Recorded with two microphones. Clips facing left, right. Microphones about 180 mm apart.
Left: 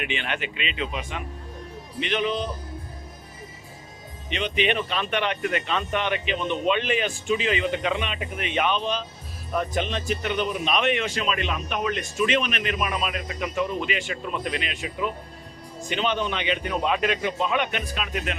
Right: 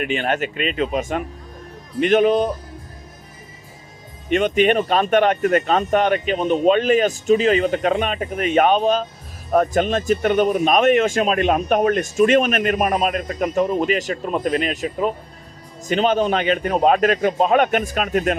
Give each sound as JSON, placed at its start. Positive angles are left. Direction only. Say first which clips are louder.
{"t": 0.0, "sound": "speech", "louder": "right 8 dB", "side_deg": -45}
{"t": 4.3, "sound": "speech", "louder": "right 9 dB", "side_deg": -50}